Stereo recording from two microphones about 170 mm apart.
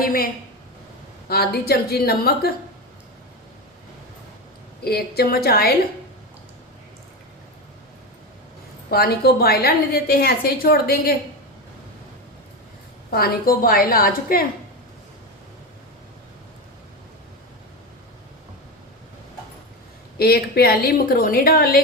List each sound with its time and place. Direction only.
0.0 s a woman's voice: 60° left (ahead or behind)
1.3 s a woman's voice: 65° left (ahead or behind)
4.8 s a woman's voice: 65° left (ahead or behind)
8.9 s a woman's voice: 65° left (ahead or behind)
13.1 s a woman's voice: 65° left (ahead or behind)
20.1 s a woman's voice: 65° left (ahead or behind)